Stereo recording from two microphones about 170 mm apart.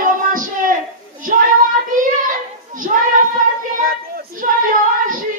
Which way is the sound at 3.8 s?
55° right (ahead or behind).